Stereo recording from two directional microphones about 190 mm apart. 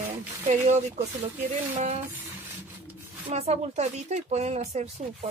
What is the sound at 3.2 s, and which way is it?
Speech, 35° right (ahead or behind).